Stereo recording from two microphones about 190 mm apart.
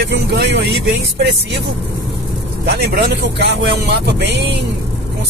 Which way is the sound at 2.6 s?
65° right (ahead or behind).